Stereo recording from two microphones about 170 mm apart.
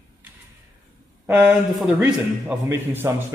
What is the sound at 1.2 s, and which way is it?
A man's voice, 10° right (ahead or behind).